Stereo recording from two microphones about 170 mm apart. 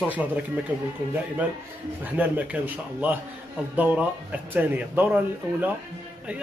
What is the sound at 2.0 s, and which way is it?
A man's voice, 10° right (ahead or behind).